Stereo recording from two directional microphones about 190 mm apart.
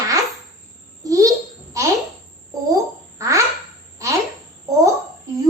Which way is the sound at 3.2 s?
15° right (ahead or behind).